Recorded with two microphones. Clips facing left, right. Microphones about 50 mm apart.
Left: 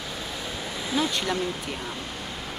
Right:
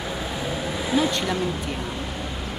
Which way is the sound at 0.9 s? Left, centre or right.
Centre.